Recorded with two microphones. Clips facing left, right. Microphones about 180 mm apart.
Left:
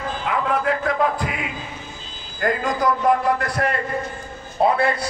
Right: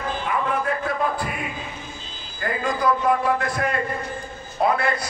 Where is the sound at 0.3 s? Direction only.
85° left.